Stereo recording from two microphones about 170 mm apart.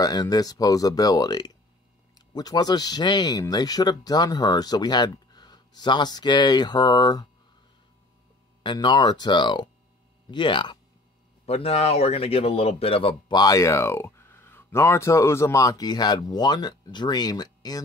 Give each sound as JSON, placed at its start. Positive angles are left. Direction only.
{"t": 0.0, "sound": "a man's voice", "side_deg": 25}
{"t": 8.6, "sound": "a man's voice", "side_deg": 25}